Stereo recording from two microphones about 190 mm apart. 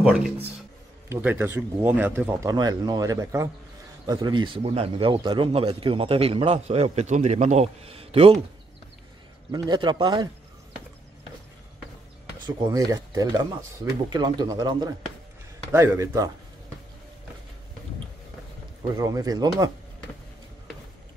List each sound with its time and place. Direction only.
0.0 s a man's voice: 5° right (ahead or behind); by 8.4 s 30° right (ahead or behind)
9.5 s speech: 20° right (ahead or behind)
12.4 s speech: 20° right (ahead or behind)
18.9 s speech: 20° right (ahead or behind)